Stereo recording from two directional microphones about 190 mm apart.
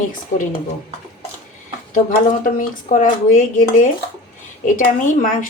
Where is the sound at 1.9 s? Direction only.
45° left (ahead or behind).